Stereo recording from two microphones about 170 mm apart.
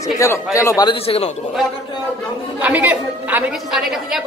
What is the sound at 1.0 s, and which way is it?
Speech, 35° left (ahead or behind).